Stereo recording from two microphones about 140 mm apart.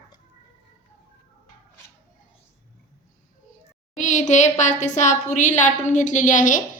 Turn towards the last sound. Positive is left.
turn(degrees=65)  # may be behind; listen again after turning